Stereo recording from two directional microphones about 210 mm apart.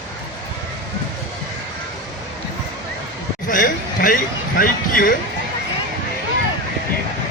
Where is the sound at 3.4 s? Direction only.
40° left (ahead or behind).